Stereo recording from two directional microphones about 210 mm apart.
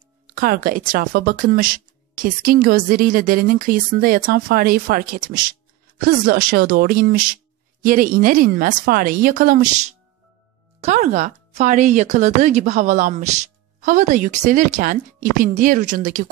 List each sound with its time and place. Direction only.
0.3 s speech: 45° right (ahead or behind)